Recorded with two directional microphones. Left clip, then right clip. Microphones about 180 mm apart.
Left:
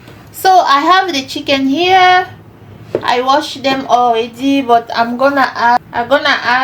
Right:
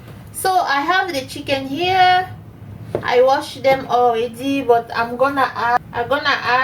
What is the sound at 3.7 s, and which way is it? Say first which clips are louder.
Speech: left 3 dB; 35° left (ahead or behind).